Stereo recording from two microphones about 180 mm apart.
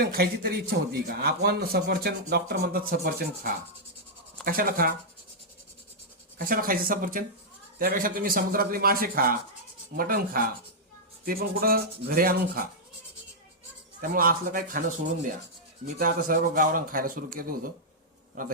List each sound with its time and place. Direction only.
0.1 s a man's voice: 60° right (ahead or behind)
6.4 s a man's voice: 50° right (ahead or behind)
14.0 s a man's voice: 50° right (ahead or behind)
16.0 s a man's voice: 50° right (ahead or behind)